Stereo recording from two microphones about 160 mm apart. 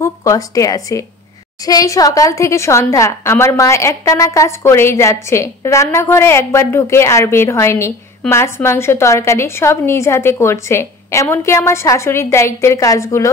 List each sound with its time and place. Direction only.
0.0 s a woman's voice: 20° left (ahead or behind)